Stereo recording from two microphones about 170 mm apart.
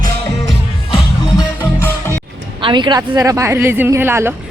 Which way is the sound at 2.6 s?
30° right (ahead or behind).